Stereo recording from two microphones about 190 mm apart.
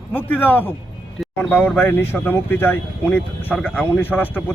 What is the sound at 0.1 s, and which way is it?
Speech, 10° left (ahead or behind).